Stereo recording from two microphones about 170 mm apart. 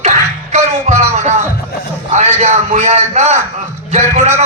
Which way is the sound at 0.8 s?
40° right (ahead or behind).